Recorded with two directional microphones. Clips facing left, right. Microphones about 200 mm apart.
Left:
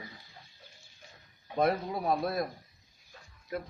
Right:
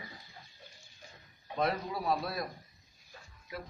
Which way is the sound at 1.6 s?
50° left (ahead or behind).